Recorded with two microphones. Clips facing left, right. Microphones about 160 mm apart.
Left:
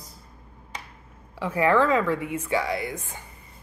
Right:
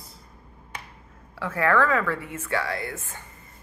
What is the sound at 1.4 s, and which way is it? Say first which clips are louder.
A woman's voice: left 2 dB; 15° left (ahead or behind).